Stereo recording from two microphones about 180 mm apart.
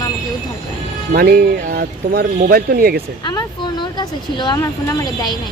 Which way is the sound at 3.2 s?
20° left (ahead or behind).